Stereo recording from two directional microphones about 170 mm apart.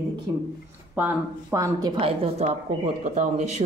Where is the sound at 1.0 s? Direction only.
15° right (ahead or behind).